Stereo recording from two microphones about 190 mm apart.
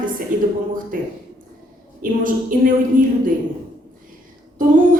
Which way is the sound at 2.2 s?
45° right (ahead or behind).